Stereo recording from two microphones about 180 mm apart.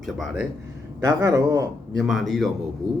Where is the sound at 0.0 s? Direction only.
Centre (ahead or behind).